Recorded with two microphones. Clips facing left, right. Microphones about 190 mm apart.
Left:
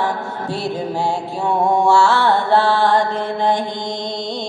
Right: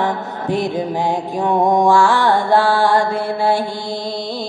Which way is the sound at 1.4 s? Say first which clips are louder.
Right 2 dB; 10° right (ahead or behind).